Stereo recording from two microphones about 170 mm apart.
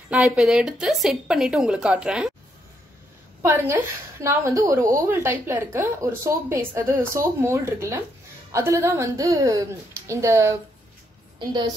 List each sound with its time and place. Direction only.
0.1 s a woman's voice: centre (ahead or behind)
3.4 s a woman's voice: 15° right (ahead or behind)